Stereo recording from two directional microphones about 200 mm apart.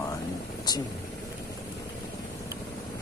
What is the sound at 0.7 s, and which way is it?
Speech, 20° left (ahead or behind).